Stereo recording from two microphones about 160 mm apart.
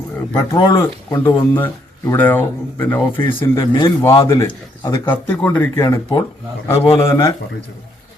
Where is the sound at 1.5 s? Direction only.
10° left (ahead or behind).